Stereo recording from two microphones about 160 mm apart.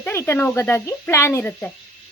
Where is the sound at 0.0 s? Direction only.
15° left (ahead or behind).